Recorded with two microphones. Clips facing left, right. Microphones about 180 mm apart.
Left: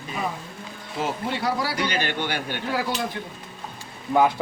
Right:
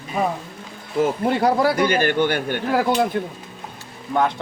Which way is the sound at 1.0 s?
50° right (ahead or behind).